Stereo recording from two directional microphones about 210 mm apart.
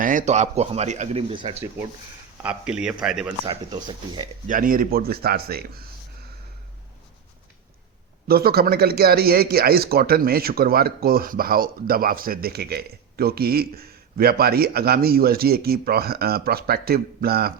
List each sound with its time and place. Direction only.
0.0 s speech: 40° right (ahead or behind)
2.4 s speech: 5° right (ahead or behind)
3.4 s speech: 20° right (ahead or behind)
4.4 s speech: 40° right (ahead or behind)
8.3 s speech: 45° right (ahead or behind)